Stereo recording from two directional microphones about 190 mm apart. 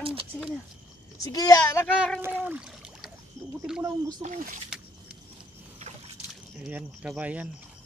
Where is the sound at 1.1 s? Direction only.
20° left (ahead or behind).